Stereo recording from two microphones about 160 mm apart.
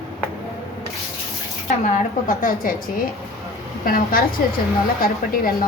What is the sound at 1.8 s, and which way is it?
A woman's voice, 50° left (ahead or behind).